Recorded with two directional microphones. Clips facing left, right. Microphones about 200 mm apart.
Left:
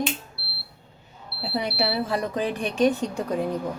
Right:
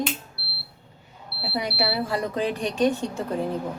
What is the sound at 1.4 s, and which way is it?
A woman's voice, 20° left (ahead or behind).